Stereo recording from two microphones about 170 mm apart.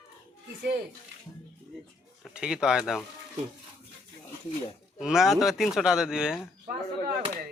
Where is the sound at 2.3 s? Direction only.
5° right (ahead or behind).